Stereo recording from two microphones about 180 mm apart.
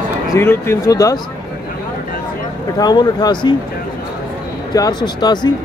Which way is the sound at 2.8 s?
20° left (ahead or behind).